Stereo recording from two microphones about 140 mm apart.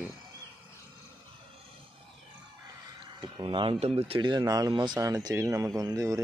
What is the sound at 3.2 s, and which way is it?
Speech, 35° right (ahead or behind).